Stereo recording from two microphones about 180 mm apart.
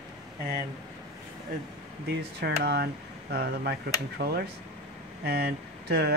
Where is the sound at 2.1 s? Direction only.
65° right (ahead or behind).